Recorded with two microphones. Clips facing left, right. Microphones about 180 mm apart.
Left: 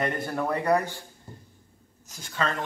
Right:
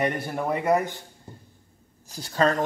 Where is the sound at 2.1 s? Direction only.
35° right (ahead or behind).